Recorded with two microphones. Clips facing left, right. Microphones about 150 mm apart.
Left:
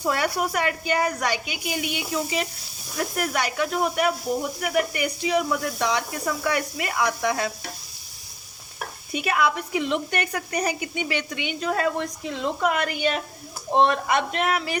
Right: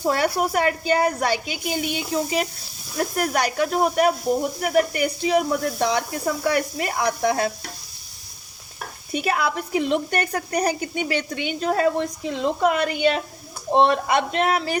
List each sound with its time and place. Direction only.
0.0 s speech: 30° right (ahead or behind)
9.1 s speech: 35° right (ahead or behind)